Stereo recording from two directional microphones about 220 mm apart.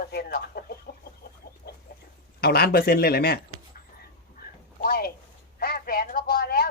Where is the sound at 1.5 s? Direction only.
45° left (ahead or behind).